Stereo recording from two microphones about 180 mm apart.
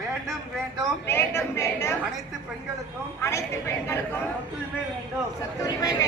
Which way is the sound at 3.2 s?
15° left (ahead or behind).